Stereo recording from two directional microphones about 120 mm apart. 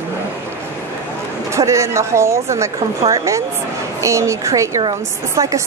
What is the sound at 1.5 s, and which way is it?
Speech, 25° right (ahead or behind).